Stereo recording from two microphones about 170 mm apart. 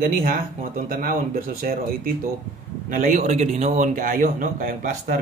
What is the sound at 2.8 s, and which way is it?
Speech, 50° right (ahead or behind).